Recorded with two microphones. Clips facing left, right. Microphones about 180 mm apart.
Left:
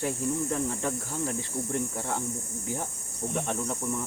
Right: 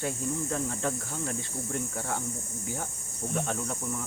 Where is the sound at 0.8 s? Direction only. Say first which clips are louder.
Left 1 dB; 20° left (ahead or behind).